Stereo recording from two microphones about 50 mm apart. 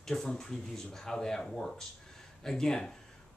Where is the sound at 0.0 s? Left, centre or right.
Centre.